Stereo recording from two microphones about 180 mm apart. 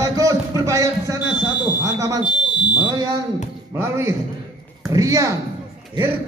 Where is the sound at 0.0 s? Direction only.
20° right (ahead or behind).